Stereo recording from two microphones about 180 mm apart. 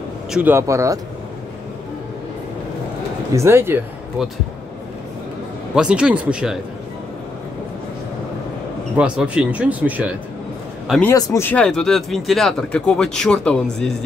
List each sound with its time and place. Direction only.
0.3 s speech: 10° right (ahead or behind)
3.3 s speech: 15° right (ahead or behind)
5.8 s speech: 5° right (ahead or behind)
8.9 s speech: 5° right (ahead or behind)
10.9 s speech: 5° left (ahead or behind)
11.1 s speech: 15° left (ahead or behind)